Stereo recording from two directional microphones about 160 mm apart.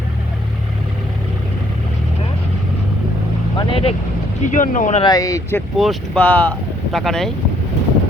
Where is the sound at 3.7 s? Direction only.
35° left (ahead or behind).